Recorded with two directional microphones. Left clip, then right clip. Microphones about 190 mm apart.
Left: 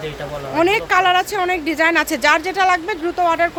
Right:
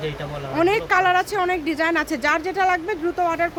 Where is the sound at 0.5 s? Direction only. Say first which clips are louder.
Left 3 dB; 15° left (ahead or behind).